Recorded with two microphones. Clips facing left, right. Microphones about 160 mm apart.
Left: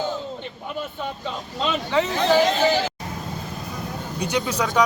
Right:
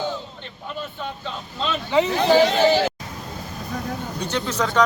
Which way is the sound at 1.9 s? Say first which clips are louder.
Right 4 dB; 15° right (ahead or behind).